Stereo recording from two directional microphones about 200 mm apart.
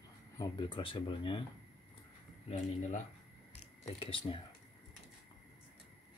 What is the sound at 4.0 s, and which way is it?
Speech, 25° left (ahead or behind).